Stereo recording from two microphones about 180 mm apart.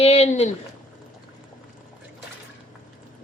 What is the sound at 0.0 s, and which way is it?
Speech, 35° left (ahead or behind).